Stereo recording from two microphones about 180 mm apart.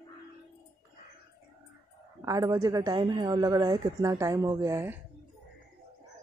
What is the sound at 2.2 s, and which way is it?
A woman's voice, 20° right (ahead or behind).